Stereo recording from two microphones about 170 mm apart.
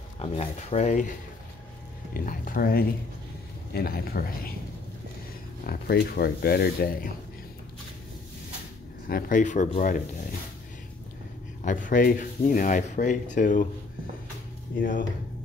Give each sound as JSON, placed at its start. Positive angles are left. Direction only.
{"t": 0.2, "sound": "speech", "side_deg": 40}
{"t": 2.1, "sound": "speech", "side_deg": 55}
{"t": 5.7, "sound": "speech", "side_deg": 65}
{"t": 9.1, "sound": "speech", "side_deg": 50}
{"t": 11.6, "sound": "speech", "side_deg": 50}
{"t": 14.8, "sound": "speech", "side_deg": 55}